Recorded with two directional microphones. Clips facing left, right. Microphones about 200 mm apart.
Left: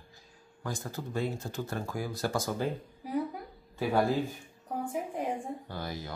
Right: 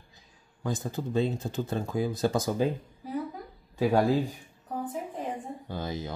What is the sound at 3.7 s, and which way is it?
Speech, 20° right (ahead or behind).